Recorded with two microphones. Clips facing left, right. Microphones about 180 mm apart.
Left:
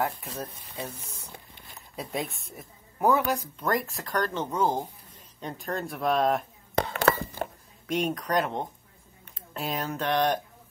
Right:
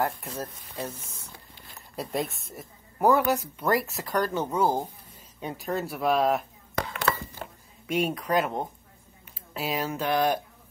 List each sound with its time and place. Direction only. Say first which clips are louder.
0.0 s speech: right 1 dB; centre (ahead or behind)
6.9 s a sound: left 4 dB; 40° left (ahead or behind)
7.4 s music: left 7 dB; 50° left (ahead or behind)
7.8 s speech: right 1 dB; 5° right (ahead or behind)